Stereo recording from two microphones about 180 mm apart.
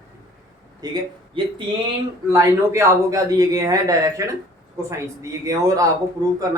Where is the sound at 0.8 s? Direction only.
25° right (ahead or behind).